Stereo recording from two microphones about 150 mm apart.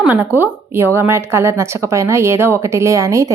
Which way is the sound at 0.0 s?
10° right (ahead or behind).